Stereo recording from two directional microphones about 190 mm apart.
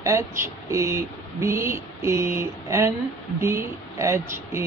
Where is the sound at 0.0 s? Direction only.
15° right (ahead or behind).